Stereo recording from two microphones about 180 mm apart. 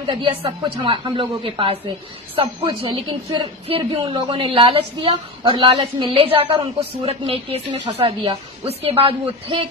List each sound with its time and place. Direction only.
0.0 s a woman's voice: 25° right (ahead or behind)